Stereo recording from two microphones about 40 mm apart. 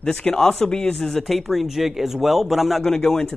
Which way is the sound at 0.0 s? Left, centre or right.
Left.